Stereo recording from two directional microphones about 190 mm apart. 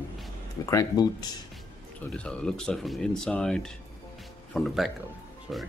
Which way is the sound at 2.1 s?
5° left (ahead or behind).